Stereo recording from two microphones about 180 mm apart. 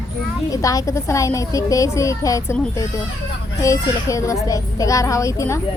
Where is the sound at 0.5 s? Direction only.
20° left (ahead or behind).